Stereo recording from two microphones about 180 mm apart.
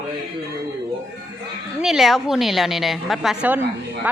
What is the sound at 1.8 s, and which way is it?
Speech, centre (ahead or behind).